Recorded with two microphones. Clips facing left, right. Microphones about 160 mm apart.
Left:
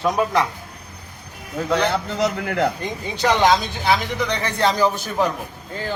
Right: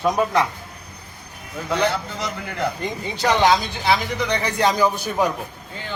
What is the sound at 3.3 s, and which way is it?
Speech, centre (ahead or behind).